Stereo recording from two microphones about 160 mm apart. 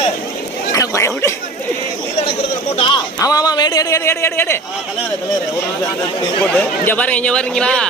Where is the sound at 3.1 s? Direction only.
20° left (ahead or behind).